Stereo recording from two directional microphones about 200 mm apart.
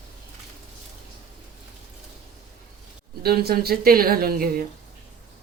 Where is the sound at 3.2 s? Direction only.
50° right (ahead or behind).